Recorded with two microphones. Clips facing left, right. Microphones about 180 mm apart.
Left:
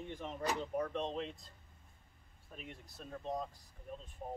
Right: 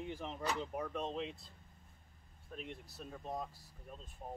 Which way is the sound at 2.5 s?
Centre (ahead or behind).